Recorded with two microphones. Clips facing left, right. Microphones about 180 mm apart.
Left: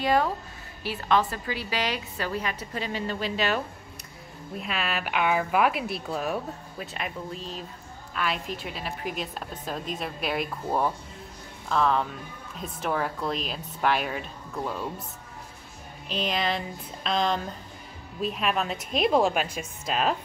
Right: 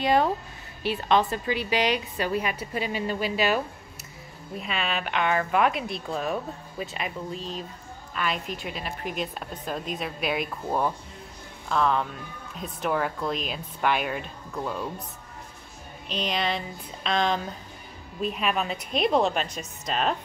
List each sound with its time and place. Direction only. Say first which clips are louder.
0.0 s a woman's voice: right 2 dB; 20° right (ahead or behind)
4.6 s speech: right 1 dB; centre (ahead or behind)
16.1 s speech: even; centre (ahead or behind)